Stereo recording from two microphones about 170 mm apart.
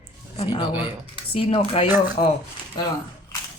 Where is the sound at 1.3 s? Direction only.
30° left (ahead or behind).